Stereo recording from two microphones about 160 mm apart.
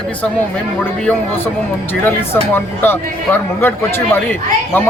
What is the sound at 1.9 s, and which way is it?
A man's voice, 10° left (ahead or behind).